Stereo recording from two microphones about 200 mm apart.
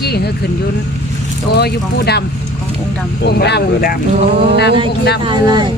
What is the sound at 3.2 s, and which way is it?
Speech, 55° left (ahead or behind).